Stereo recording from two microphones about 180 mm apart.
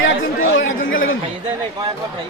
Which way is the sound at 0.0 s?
90° left.